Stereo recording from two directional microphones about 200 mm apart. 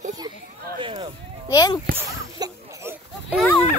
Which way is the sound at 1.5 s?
20° left (ahead or behind).